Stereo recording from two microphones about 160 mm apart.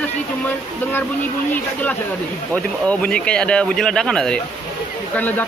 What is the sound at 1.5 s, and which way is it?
Speech, 10° left (ahead or behind).